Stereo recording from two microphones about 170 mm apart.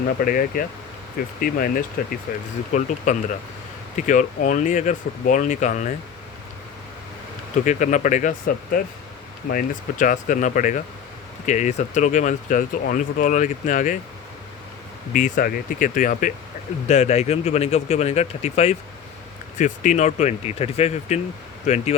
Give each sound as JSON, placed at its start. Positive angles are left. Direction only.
{"t": 0.2, "sound": "speech", "side_deg": 55}
{"t": 7.5, "sound": "speech", "side_deg": 45}
{"t": 15.1, "sound": "speech", "side_deg": 55}
{"t": 16.9, "sound": "speech", "side_deg": 40}